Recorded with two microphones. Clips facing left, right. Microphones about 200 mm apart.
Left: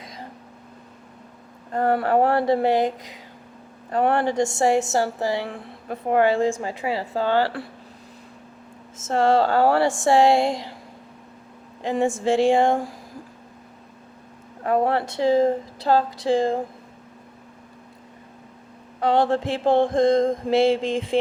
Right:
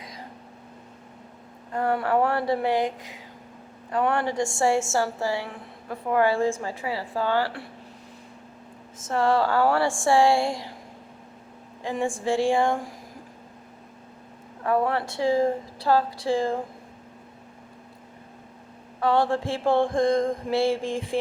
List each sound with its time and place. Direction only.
1.7 s speech: 35° left (ahead or behind)
2.5 s speech: 25° left (ahead or behind)
3.9 s speech: 35° left (ahead or behind)
4.9 s speech: 20° left (ahead or behind)
9.0 s speech: 25° left (ahead or behind)
11.8 s speech: 20° left (ahead or behind)
14.6 s speech: 25° left (ahead or behind)
19.0 s speech: 20° left (ahead or behind)